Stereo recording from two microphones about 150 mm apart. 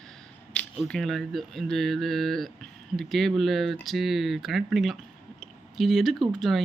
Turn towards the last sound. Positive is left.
turn(degrees=0)  # may be behind; listen again after turning